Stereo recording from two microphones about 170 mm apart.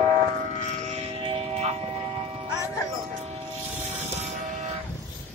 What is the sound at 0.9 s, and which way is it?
Music, 35° right (ahead or behind).